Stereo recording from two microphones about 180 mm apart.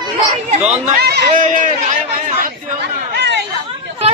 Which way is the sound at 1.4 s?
45° right (ahead or behind).